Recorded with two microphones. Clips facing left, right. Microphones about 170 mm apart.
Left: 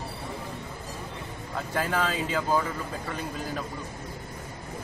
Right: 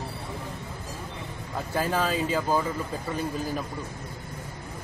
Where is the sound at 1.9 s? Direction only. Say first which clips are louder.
Right 4 dB; 10° right (ahead or behind).